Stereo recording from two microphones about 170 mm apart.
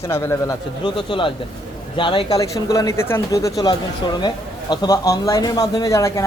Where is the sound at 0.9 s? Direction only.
30° left (ahead or behind).